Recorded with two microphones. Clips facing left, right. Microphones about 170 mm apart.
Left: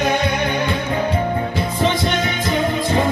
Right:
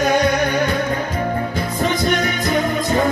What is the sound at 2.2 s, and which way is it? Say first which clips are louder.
Music: right 1 dB; 45° right (ahead or behind).